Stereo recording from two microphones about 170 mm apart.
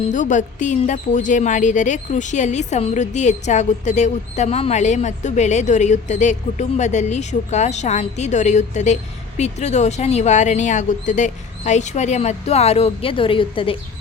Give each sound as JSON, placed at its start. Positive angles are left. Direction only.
{"t": 0.0, "sound": "a woman's voice", "side_deg": 45}